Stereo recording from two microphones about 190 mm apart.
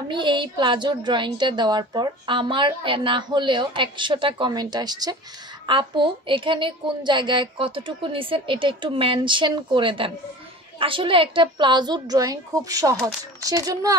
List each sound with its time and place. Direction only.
0.1 s a woman's voice: 25° right (ahead or behind)